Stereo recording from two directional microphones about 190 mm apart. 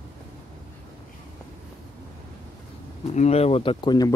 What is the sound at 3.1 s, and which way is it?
Speech, 35° left (ahead or behind).